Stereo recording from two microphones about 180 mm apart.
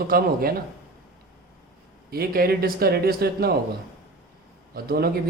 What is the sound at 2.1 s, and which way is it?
Speech, 55° right (ahead or behind).